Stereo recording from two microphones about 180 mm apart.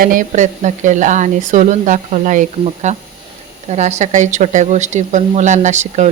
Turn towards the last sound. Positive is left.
turn(degrees=-40)  # may be behind; listen again after turning